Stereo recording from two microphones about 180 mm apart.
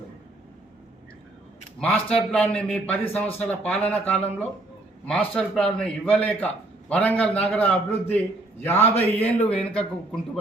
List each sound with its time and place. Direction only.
1.8 s a man's voice: 5° left (ahead or behind)